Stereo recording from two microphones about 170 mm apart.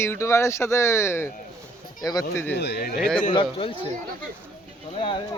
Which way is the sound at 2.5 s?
70° left (ahead or behind).